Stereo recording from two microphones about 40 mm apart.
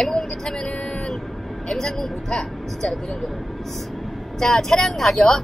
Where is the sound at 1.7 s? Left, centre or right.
Centre.